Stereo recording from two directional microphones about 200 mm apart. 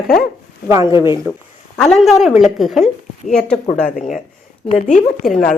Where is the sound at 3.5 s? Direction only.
35° left (ahead or behind).